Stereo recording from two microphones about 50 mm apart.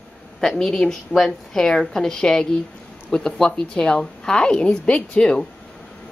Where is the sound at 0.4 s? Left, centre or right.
Centre.